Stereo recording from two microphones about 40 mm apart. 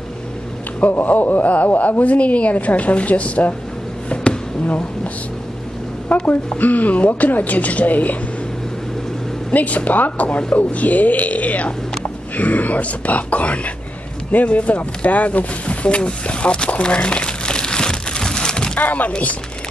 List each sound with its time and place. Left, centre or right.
0.7 s a woman's voice: left
4.1 s a sound: left
6.1 s a woman's voice: left
9.5 s a woman's voice: left; by 18.7 s centre
18.8 s a woman's voice: left